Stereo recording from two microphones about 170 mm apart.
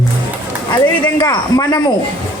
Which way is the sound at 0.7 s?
25° left (ahead or behind).